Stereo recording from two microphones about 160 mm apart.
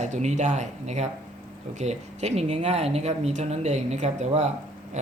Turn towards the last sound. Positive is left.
turn(degrees=-50)  # may be behind; listen again after turning